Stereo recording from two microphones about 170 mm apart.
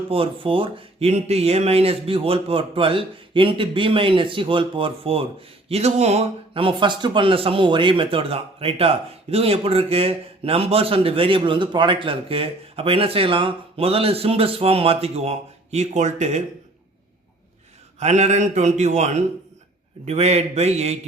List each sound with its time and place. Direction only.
0.1 s speech: 30° right (ahead or behind)
18.0 s a man's voice: 40° right (ahead or behind)